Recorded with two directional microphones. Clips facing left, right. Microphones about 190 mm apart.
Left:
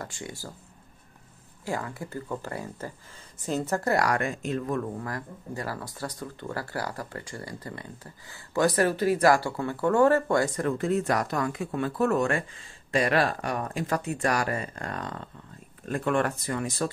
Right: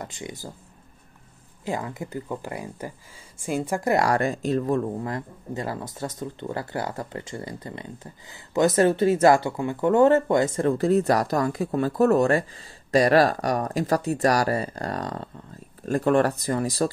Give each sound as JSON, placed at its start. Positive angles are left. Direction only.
{"t": 0.0, "sound": "speech", "side_deg": -20}
{"t": 1.6, "sound": "speech", "side_deg": -20}